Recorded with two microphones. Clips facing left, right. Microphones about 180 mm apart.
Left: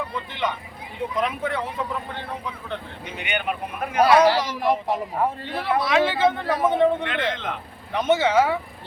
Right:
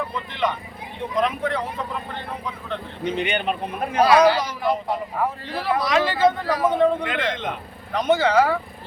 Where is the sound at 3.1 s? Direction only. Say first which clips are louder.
Right 4 dB; 30° right (ahead or behind).